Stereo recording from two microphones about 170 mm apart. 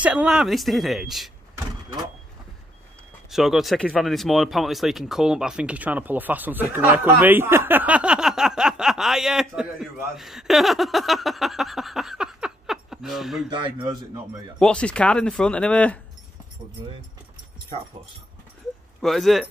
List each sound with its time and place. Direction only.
0.0 s speech: 5° right (ahead or behind)
3.3 s speech: centre (ahead or behind)
13.5 s speech: 25° right (ahead or behind)
14.6 s speech: 5° left (ahead or behind)
17.7 s speech: 35° right (ahead or behind)
18.9 s speech: centre (ahead or behind)